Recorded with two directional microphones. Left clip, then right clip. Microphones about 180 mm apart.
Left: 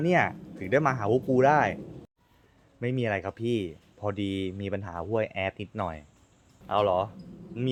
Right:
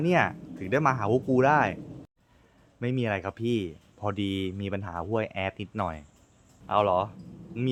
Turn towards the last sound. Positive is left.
turn(degrees=-15)  # may be behind; listen again after turning